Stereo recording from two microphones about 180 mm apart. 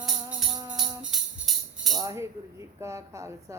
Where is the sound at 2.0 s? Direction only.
20° right (ahead or behind).